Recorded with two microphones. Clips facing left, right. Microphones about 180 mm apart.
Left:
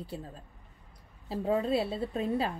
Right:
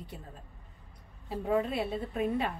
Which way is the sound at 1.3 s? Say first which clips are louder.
Left 2 dB; 30° left (ahead or behind).